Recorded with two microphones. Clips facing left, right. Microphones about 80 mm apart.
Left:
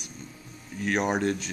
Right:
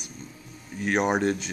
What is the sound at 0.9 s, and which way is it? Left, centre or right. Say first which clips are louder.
Speech: right 2 dB; right.